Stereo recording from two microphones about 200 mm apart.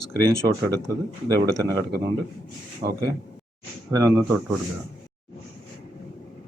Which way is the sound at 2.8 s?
45° right (ahead or behind).